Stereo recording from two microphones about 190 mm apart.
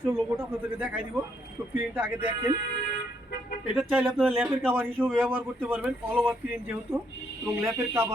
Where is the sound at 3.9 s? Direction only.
Centre (ahead or behind).